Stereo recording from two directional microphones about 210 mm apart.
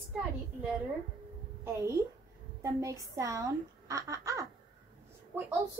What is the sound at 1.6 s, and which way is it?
A woman's voice, 15° right (ahead or behind).